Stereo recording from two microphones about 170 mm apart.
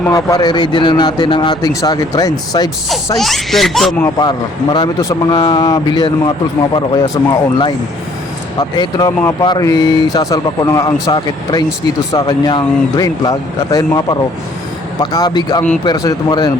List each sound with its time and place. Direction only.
0.0 s speech: 20° left (ahead or behind)
3.2 s speech: centre (ahead or behind)
4.2 s speech: 25° left (ahead or behind)
8.5 s speech: 20° left (ahead or behind)